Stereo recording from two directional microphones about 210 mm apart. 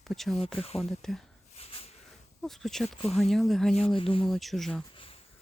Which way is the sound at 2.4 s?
Centre (ahead or behind).